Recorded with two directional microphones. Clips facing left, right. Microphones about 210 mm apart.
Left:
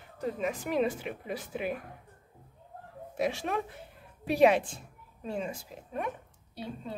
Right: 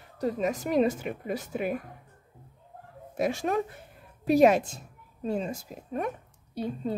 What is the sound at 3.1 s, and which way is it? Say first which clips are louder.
A woman's voice: right 4 dB; 45° right (ahead or behind).